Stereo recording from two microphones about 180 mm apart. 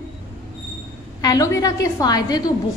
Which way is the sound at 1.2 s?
20° left (ahead or behind).